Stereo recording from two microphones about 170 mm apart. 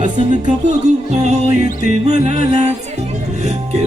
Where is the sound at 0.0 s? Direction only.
45° right (ahead or behind).